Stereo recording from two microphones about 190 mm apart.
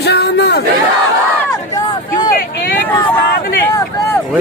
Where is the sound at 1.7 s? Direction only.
20° left (ahead or behind).